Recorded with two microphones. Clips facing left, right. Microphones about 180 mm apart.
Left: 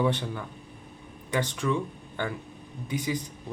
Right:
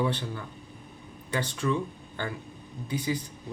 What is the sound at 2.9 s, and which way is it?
Speech, 20° left (ahead or behind).